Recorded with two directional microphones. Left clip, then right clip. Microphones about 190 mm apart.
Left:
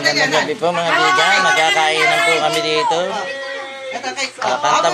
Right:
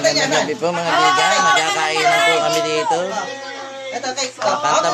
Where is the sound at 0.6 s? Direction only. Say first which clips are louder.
Left 1 dB; 15° right (ahead or behind).